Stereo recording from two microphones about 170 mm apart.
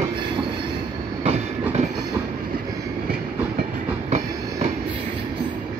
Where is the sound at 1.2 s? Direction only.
40° right (ahead or behind).